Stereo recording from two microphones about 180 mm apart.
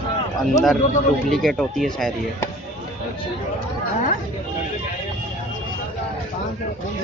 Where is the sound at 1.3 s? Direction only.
Centre (ahead or behind).